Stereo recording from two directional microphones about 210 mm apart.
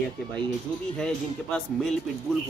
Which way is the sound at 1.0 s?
5° left (ahead or behind).